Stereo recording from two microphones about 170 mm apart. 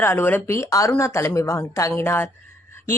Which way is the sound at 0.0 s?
15° left (ahead or behind).